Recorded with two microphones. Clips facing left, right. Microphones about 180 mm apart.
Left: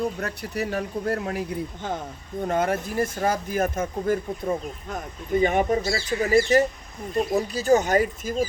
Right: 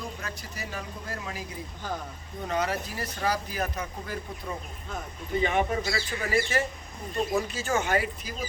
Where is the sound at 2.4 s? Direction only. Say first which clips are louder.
Left 5 dB; 50° left (ahead or behind).